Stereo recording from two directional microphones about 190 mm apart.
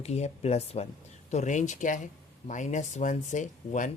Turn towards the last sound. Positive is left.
turn(degrees=40)  # may be behind; listen again after turning